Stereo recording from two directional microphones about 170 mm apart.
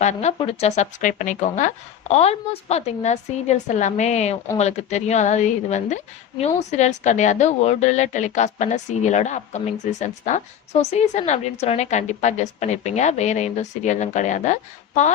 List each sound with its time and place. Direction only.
0.0 s a woman's voice: 40° left (ahead or behind)